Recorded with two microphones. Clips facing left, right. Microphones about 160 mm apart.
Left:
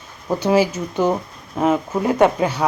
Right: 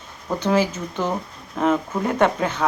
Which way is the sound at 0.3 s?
10° left (ahead or behind).